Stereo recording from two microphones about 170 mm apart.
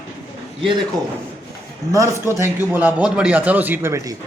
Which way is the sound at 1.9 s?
15° right (ahead or behind).